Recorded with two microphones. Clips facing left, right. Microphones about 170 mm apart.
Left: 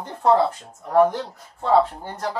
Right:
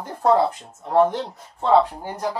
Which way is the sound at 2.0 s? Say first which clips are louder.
Right 2 dB; 15° right (ahead or behind).